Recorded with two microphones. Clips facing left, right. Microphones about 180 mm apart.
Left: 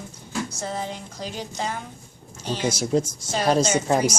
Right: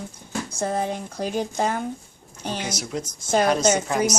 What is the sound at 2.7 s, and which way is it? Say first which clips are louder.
Speech: left 7 dB; 30° left (ahead or behind).